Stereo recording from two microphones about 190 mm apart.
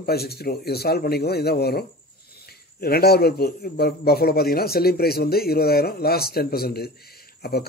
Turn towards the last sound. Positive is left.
turn(degrees=55)  # may be behind; listen again after turning